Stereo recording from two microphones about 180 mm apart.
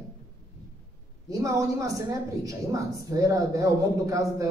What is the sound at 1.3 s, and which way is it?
A woman's voice, 20° right (ahead or behind).